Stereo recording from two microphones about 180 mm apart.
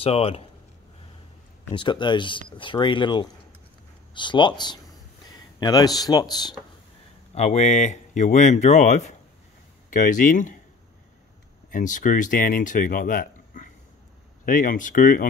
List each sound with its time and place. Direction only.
0.0 s speech: 30° left (ahead or behind)
1.7 s speech: 25° left (ahead or behind)
7.3 s speech: 40° left (ahead or behind)
11.7 s speech: 45° left (ahead or behind)